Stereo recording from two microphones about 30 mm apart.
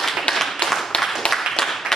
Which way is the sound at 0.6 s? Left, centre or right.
Centre.